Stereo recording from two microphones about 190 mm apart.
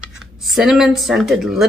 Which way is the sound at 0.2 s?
Centre (ahead or behind).